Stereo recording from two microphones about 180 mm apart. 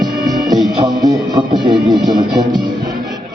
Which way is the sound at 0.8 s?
25° right (ahead or behind).